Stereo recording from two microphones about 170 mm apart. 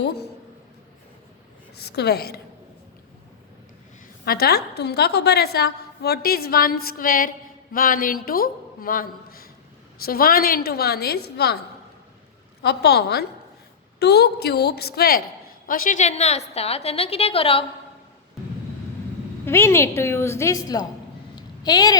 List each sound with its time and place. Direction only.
0.0 s a woman's voice: 75° left (ahead or behind)
1.7 s a woman's voice: 70° left (ahead or behind)
4.3 s a woman's voice: 65° left (ahead or behind)
12.6 s a woman's voice: 75° left (ahead or behind)
15.6 s a woman's voice: 55° left (ahead or behind); by 17.7 s 35° left (ahead or behind)
19.5 s a woman's voice: 15° left (ahead or behind)
21.3 s a sound: 25° left (ahead or behind)